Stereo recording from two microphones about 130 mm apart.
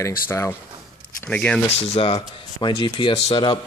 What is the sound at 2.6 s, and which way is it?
Speech, 35° left (ahead or behind).